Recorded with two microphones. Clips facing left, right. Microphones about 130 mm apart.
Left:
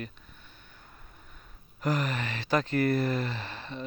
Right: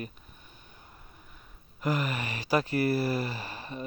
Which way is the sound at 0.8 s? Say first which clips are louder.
Even; 15° right (ahead or behind).